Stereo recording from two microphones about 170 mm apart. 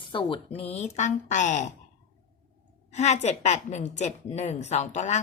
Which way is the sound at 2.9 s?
40° left (ahead or behind).